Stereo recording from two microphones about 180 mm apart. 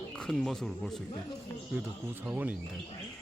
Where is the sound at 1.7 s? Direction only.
10° right (ahead or behind).